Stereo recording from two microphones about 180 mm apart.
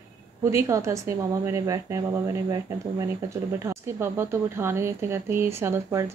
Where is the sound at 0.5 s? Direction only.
15° right (ahead or behind).